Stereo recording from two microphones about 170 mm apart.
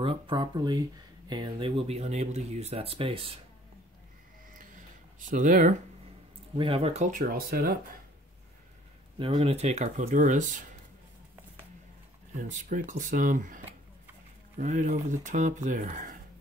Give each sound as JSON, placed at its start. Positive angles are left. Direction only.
{"t": 0.0, "sound": "speech", "side_deg": -30}
{"t": 4.6, "sound": "a sound", "side_deg": -50}
{"t": 6.5, "sound": "speech", "side_deg": -30}
{"t": 7.1, "sound": "speech", "side_deg": -55}
{"t": 9.2, "sound": "speech", "side_deg": -35}
{"t": 12.4, "sound": "speech", "side_deg": -45}
{"t": 14.6, "sound": "speech", "side_deg": -45}